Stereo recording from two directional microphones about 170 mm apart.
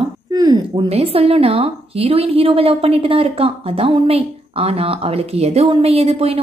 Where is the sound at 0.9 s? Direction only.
35° right (ahead or behind).